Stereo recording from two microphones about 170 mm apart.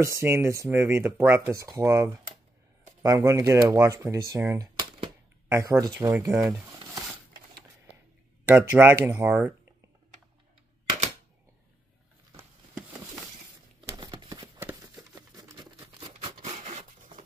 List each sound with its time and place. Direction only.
0.0 s speech: 15° right (ahead or behind)
4.7 s cap gun: 30° right (ahead or behind)
6.1 s speech: 10° right (ahead or behind)
6.7 s a sound: 25° right (ahead or behind)
8.5 s speech: 10° right (ahead or behind)
13.9 s a sound: 25° right (ahead or behind)
15.0 s rub: 20° right (ahead or behind); by 17.2 s 40° right (ahead or behind)